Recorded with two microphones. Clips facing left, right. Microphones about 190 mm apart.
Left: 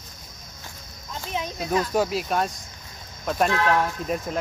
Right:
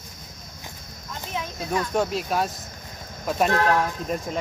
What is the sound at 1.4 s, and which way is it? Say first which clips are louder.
Snake: left 2 dB; 20° left (ahead or behind).